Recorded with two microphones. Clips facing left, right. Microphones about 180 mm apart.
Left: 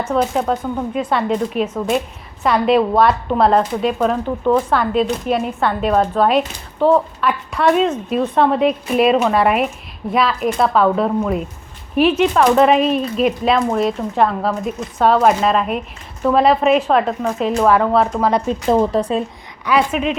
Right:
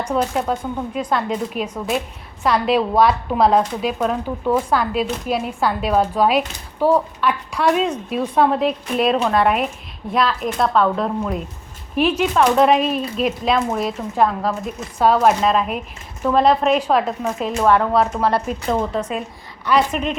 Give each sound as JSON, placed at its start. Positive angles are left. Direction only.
{"t": 0.0, "sound": "a woman's voice", "side_deg": 0}
{"t": 18.2, "sound": "speech", "side_deg": 15}
{"t": 18.4, "sound": "speech", "side_deg": 30}
{"t": 19.6, "sound": "a woman's voice", "side_deg": 5}